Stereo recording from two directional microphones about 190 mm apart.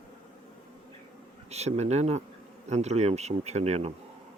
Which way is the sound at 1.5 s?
35° right (ahead or behind).